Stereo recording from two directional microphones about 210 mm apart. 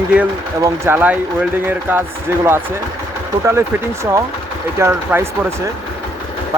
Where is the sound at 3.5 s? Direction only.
10° right (ahead or behind).